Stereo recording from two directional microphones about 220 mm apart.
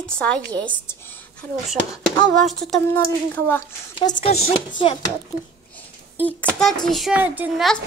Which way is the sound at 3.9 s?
20° left (ahead or behind).